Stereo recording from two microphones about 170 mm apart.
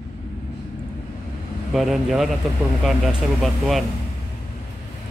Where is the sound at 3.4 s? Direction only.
Centre (ahead or behind).